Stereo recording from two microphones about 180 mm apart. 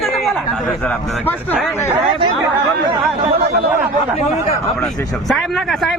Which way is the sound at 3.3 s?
65° right (ahead or behind).